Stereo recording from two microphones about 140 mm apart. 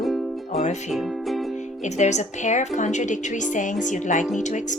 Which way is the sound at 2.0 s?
55° left (ahead or behind).